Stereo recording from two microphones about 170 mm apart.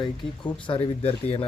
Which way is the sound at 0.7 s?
35° left (ahead or behind).